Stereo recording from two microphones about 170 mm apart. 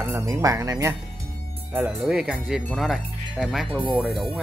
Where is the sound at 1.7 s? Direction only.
5° right (ahead or behind).